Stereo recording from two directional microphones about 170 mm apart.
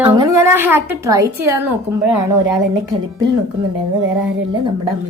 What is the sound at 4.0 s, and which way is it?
Speech, 25° right (ahead or behind).